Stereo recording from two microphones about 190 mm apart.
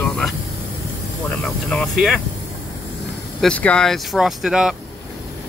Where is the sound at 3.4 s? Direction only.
5° left (ahead or behind).